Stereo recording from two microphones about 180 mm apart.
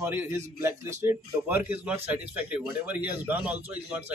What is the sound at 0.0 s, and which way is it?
A man's voice, 10° right (ahead or behind).